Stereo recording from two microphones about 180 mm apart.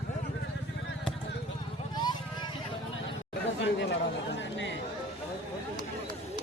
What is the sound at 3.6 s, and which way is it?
Chatter, 90° left.